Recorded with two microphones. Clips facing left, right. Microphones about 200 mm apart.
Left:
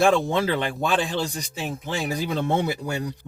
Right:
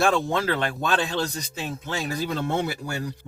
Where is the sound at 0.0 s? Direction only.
15° left (ahead or behind).